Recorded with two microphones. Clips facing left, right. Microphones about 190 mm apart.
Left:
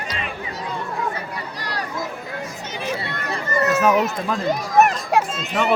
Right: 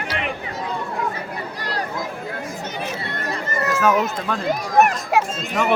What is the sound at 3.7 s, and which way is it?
Run, 25° left (ahead or behind).